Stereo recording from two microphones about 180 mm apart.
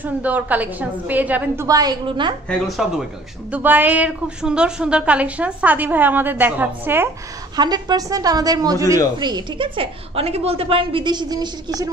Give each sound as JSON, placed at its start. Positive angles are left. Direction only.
{"t": 0.0, "sound": "a woman's voice", "side_deg": -10}
{"t": 1.7, "sound": "a woman's voice", "side_deg": -20}
{"t": 2.6, "sound": "a man's voice", "side_deg": -5}
{"t": 7.5, "sound": "a woman's voice", "side_deg": -25}